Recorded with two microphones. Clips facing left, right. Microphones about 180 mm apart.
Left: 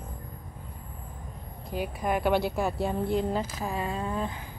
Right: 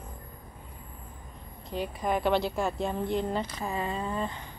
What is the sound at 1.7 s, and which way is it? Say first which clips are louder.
Speech: left 1 dB; 5° left (ahead or behind).